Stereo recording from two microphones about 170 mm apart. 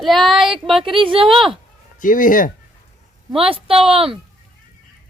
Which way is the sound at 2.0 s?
50° left (ahead or behind).